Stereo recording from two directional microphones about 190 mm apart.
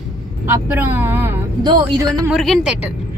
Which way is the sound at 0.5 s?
10° right (ahead or behind).